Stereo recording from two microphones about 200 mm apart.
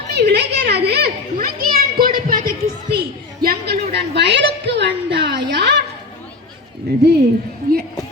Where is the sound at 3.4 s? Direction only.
50° right (ahead or behind).